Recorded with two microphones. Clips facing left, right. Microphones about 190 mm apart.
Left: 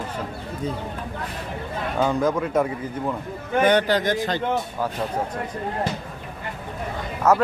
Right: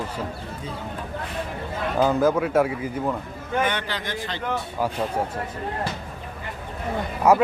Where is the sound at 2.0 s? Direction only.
5° right (ahead or behind).